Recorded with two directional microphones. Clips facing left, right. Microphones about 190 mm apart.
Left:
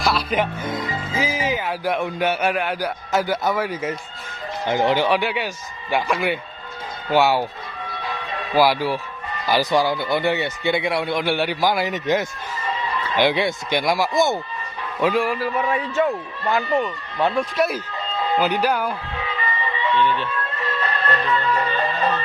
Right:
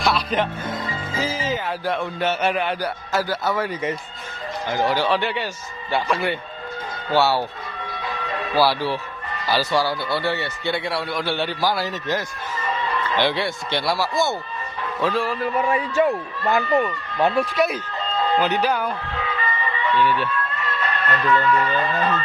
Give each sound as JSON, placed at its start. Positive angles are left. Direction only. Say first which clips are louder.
{"t": 0.0, "sound": "music", "louder": "even", "side_deg": 5}
{"t": 1.2, "sound": "speech", "louder": "left 1 dB", "side_deg": 15}
{"t": 3.1, "sound": "speech", "louder": "left 3 dB", "side_deg": 20}
{"t": 4.7, "sound": "speech", "louder": "left 2 dB", "side_deg": 20}
{"t": 8.5, "sound": "speech", "louder": "left 2 dB", "side_deg": 15}
{"t": 15.6, "sound": "a man's voice", "louder": "right 2 dB", "side_deg": -10}
{"t": 17.5, "sound": "speech", "louder": "even", "side_deg": 0}
{"t": 18.3, "sound": "vehicle", "louder": "left 2 dB", "side_deg": 10}
{"t": 20.0, "sound": "a man's voice", "louder": "right 1 dB", "side_deg": -10}
{"t": 20.6, "sound": "music", "louder": "left 1 dB", "side_deg": 30}